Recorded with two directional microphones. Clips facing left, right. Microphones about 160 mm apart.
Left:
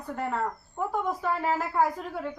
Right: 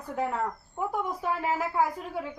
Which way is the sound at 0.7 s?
10° right (ahead or behind).